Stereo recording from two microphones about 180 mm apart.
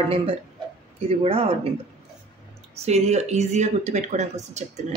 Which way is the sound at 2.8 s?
35° right (ahead or behind).